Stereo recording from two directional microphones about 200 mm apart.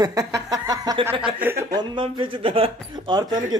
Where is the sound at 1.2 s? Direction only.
5° right (ahead or behind).